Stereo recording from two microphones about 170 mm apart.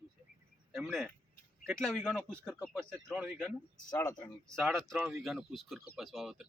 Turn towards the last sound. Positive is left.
turn(degrees=0)  # may be behind; listen again after turning